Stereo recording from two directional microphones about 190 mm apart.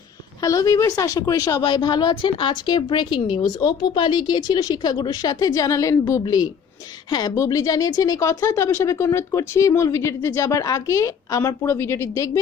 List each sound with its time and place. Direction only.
0.4 s a woman's voice: 20° left (ahead or behind)